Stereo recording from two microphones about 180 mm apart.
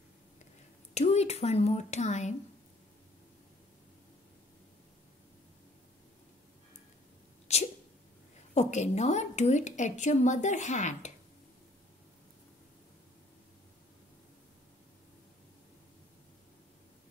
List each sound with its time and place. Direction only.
0.9 s speech: 35° left (ahead or behind)
7.5 s a sound: 35° left (ahead or behind)
8.5 s a woman's voice: 40° left (ahead or behind)